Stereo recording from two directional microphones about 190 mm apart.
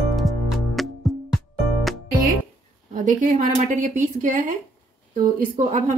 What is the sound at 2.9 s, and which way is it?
A woman's voice, 45° right (ahead or behind).